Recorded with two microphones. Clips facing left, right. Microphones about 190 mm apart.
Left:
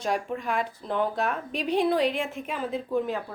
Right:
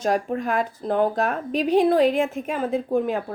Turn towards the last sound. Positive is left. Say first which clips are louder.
# right 5 dB
turn(degrees=-55)  # may be behind; listen again after turning